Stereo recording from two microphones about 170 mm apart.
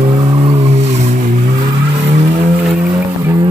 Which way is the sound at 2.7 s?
10° right (ahead or behind).